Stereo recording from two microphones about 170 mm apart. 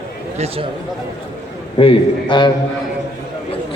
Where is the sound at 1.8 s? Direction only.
30° left (ahead or behind).